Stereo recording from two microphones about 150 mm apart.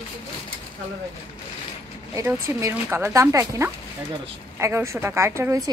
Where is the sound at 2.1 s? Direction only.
20° right (ahead or behind).